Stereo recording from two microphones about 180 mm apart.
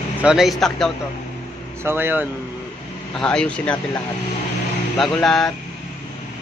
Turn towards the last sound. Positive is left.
turn(degrees=0)  # may be behind; listen again after turning